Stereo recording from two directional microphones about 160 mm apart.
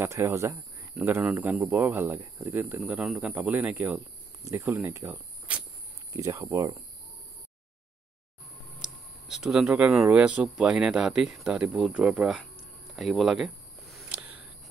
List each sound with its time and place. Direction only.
0.0 s speech: 15° right (ahead or behind)
2.6 s speech: 5° right (ahead or behind)
9.3 s speech: 5° right (ahead or behind)
12.9 s a sound: centre (ahead or behind)